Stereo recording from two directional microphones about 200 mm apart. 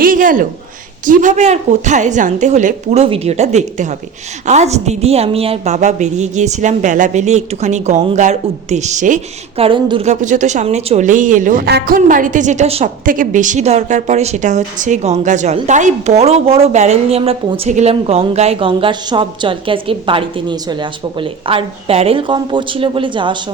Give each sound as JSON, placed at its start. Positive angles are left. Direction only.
{"t": 0.0, "sound": "a sound", "side_deg": -45}
{"t": 1.0, "sound": "a woman's voice", "side_deg": -40}
{"t": 10.1, "sound": "a woman's voice", "side_deg": -40}